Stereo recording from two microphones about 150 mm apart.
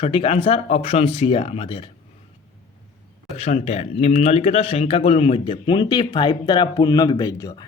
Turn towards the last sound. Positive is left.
turn(degrees=25)  # may be behind; listen again after turning